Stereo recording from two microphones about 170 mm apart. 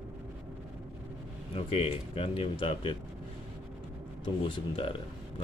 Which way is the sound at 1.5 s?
35° left (ahead or behind).